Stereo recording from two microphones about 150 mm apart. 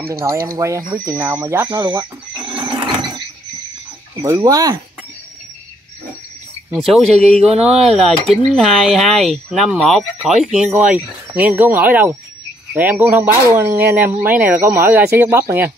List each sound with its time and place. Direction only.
0.6 s speech: 20° right (ahead or behind)
2.6 s a sound: 35° right (ahead or behind)
4.2 s speech: 20° right (ahead or behind)
6.7 s speech: centre (ahead or behind)